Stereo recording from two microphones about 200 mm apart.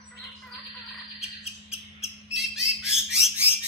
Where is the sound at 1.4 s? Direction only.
30° left (ahead or behind).